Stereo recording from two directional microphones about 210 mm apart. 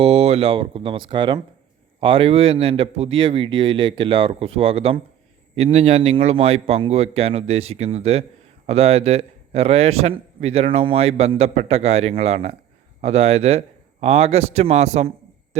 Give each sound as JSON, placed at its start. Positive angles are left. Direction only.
{"t": 0.0, "sound": "a man's voice", "side_deg": -30}